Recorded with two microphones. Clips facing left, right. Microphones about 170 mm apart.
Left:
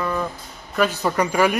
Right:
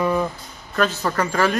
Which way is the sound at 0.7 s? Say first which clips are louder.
Left 1 dB; 10° left (ahead or behind).